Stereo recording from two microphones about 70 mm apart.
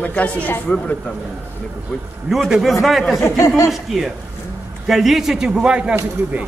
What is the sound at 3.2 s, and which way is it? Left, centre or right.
Speech, left.